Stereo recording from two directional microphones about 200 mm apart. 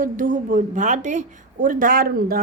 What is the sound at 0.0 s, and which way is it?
A woman's voice, 40° right (ahead or behind).